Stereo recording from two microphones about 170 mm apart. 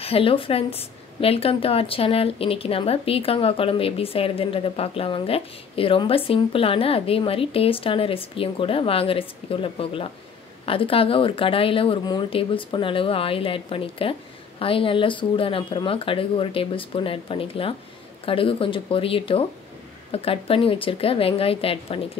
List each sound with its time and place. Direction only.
0.0 s a woman's voice: 35° left (ahead or behind)